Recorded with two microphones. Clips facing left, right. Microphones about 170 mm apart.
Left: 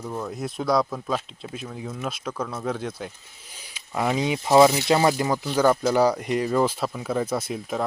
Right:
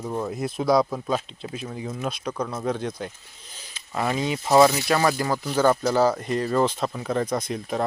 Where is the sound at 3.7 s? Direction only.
15° left (ahead or behind).